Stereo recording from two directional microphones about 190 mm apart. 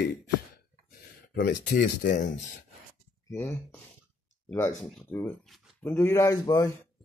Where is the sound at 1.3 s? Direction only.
65° left (ahead or behind).